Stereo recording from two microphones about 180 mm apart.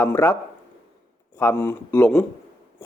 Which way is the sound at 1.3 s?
10° left (ahead or behind).